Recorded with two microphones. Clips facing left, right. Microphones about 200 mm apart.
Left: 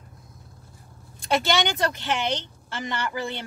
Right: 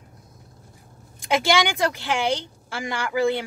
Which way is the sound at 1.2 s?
15° right (ahead or behind).